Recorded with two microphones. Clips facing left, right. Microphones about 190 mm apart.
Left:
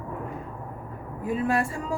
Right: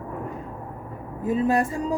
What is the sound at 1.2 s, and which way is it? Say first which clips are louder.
Speech: right 4 dB; 20° right (ahead or behind).